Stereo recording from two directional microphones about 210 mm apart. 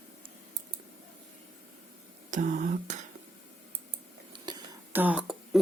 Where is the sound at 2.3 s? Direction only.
35° right (ahead or behind).